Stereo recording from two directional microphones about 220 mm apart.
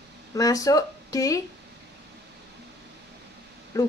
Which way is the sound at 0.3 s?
15° left (ahead or behind).